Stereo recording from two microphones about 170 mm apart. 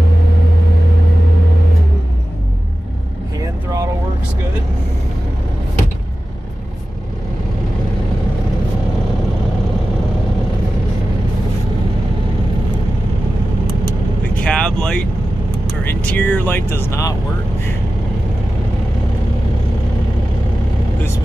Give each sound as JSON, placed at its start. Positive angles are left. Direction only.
{"t": 3.3, "sound": "vehicle", "side_deg": -20}
{"t": 14.3, "sound": "vehicle", "side_deg": 5}